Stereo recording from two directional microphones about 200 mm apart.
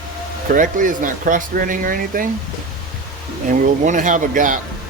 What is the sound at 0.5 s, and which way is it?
Speech, 40° right (ahead or behind).